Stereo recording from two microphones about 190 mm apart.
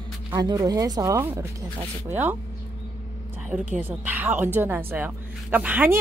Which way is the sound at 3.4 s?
5° right (ahead or behind).